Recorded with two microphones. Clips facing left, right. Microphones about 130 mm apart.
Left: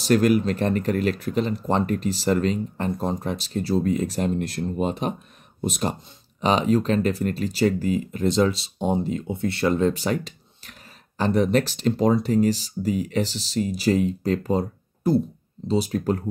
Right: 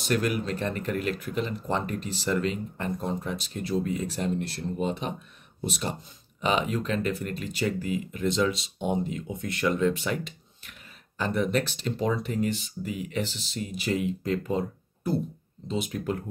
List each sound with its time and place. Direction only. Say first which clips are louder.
0.0 s speech: left 8 dB; 40° left (ahead or behind)